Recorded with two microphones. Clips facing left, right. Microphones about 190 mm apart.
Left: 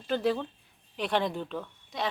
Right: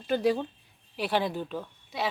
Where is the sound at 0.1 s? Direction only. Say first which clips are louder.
Right 2 dB; 15° right (ahead or behind).